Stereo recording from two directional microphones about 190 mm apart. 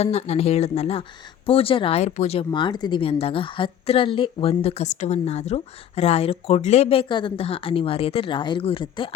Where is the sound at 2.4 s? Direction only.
25° left (ahead or behind).